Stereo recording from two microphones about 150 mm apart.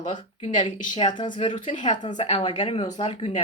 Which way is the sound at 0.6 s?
30° left (ahead or behind).